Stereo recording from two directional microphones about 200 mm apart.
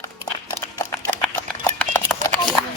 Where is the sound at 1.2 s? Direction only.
10° left (ahead or behind).